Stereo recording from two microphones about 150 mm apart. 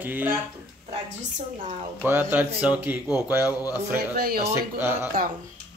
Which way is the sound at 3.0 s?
25° left (ahead or behind).